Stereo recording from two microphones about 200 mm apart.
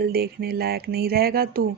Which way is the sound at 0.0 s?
50° right (ahead or behind).